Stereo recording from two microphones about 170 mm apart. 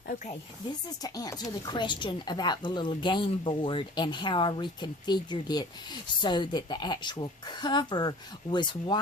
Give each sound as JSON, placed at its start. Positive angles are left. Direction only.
{"t": 0.9, "sound": "speech", "side_deg": 20}